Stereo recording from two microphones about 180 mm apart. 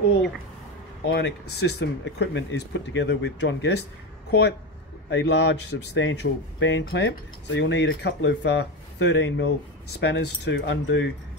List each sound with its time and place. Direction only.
1.0 s speech: 70° left (ahead or behind)
5.1 s speech: 75° left (ahead or behind)